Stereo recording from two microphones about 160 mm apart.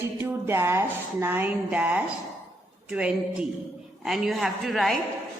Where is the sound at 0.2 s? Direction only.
15° right (ahead or behind); by 4.9 s centre (ahead or behind).